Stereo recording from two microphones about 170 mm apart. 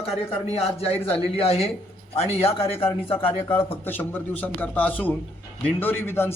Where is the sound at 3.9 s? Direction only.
10° left (ahead or behind).